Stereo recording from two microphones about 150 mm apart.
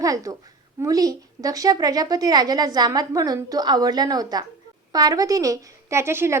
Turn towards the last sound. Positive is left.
turn(degrees=-15)  # may be behind; listen again after turning